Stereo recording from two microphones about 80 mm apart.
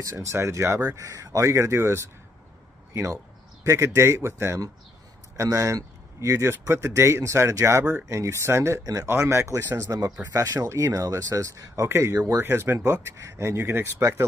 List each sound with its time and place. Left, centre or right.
0.0 s speech: right
10.3 s speech: right
12.4 s speech: right